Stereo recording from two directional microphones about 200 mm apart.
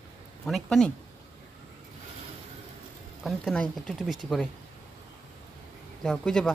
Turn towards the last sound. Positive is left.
turn(degrees=5)  # may be behind; listen again after turning